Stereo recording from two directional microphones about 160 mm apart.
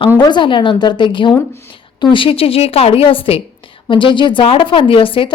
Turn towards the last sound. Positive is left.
turn(degrees=35)  # may be behind; listen again after turning